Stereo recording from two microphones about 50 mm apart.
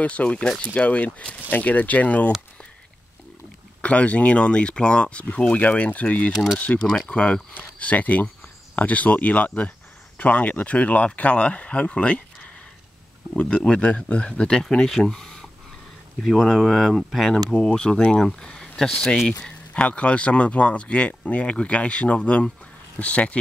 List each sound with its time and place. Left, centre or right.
0.0 s speech: left
3.8 s speech: left
5.6 s speech: left
13.7 s speech: left
16.2 s speech: centre
17.6 s speech: centre
19.1 s speech: centre
19.7 s speech: left